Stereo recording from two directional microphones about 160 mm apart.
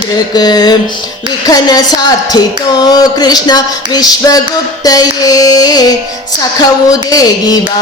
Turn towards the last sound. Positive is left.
turn(degrees=25)  # may be behind; listen again after turning